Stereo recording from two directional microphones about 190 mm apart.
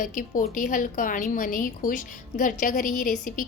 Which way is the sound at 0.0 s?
45° left (ahead or behind).